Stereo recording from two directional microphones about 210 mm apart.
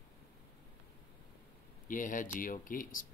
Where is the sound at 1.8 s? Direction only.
40° left (ahead or behind).